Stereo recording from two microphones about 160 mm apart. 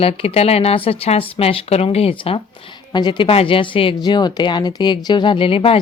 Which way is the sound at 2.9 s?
25° left (ahead or behind).